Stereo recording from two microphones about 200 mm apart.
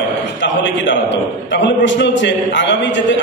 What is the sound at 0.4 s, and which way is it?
A man's voice, 65° left (ahead or behind).